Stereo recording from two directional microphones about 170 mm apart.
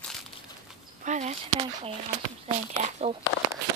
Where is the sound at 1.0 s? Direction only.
45° right (ahead or behind).